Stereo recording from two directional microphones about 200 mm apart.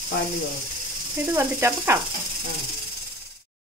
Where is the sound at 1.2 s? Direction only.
10° right (ahead or behind).